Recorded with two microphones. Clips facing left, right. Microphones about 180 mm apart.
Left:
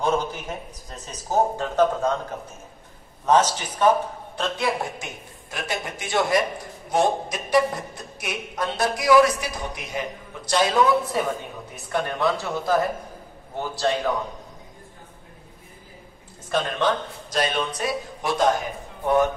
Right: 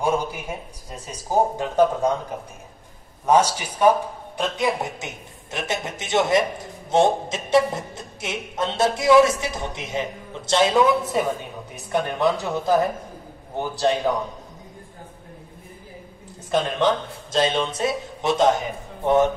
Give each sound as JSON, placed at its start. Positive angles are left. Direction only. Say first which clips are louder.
{"t": 0.0, "sound": "speech", "louder": "right 1 dB", "side_deg": -10}
{"t": 3.3, "sound": "speech", "louder": "right 1 dB", "side_deg": -10}
{"t": 16.4, "sound": "a man's voice", "louder": "right 3 dB", "side_deg": -20}